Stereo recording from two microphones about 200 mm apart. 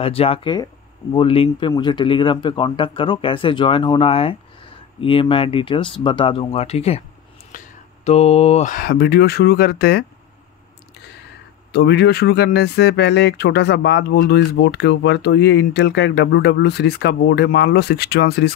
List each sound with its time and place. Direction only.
0.0 s speech: 30° left (ahead or behind); by 10.0 s 50° left (ahead or behind)
11.7 s speech: 55° left (ahead or behind)